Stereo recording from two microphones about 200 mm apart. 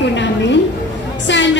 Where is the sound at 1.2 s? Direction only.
65° left (ahead or behind).